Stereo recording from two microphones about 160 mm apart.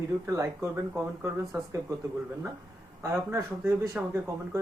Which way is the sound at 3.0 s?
15° right (ahead or behind).